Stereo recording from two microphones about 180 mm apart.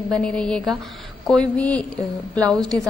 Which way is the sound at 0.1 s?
5° left (ahead or behind).